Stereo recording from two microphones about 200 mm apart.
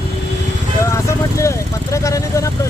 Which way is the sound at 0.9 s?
15° left (ahead or behind).